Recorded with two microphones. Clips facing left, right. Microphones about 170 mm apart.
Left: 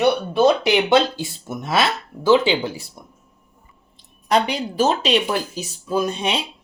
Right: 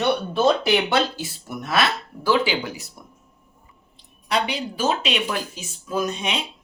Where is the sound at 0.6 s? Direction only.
25° left (ahead or behind).